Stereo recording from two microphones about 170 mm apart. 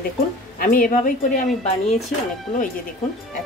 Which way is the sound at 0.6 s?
55° left (ahead or behind).